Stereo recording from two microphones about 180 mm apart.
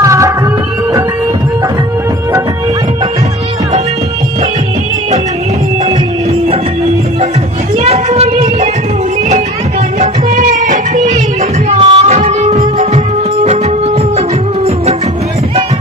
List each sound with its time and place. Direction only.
0.0 s music: 15° right (ahead or behind)
7.8 s a sound: 35° right (ahead or behind)
9.9 s music: 45° right (ahead or behind)
11.7 s music: 35° right (ahead or behind)